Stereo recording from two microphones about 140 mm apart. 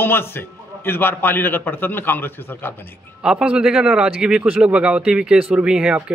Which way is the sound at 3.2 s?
5° right (ahead or behind).